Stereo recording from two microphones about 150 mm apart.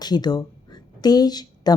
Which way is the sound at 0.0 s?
25° left (ahead or behind).